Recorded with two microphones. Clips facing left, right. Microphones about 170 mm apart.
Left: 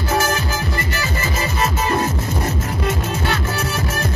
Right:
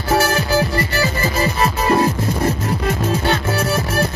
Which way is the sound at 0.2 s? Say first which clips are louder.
Right 5 dB; 35° right (ahead or behind).